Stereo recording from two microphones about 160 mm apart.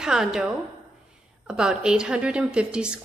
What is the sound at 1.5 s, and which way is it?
A woman's voice, 5° right (ahead or behind).